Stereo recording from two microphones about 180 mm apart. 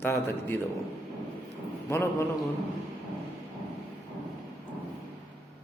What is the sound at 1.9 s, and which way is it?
Speech, 15° left (ahead or behind).